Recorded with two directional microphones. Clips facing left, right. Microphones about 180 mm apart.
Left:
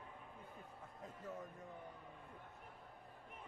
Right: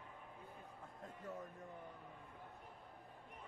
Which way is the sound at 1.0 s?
Centre (ahead or behind).